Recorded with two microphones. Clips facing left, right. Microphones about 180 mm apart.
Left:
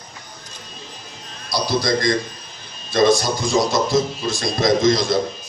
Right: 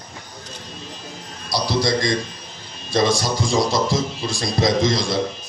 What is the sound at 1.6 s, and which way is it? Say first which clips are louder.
A man's voice: left 1 dB; 30° right (ahead or behind).